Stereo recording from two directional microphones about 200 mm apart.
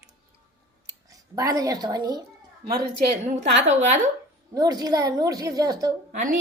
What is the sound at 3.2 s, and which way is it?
Speech, 35° right (ahead or behind).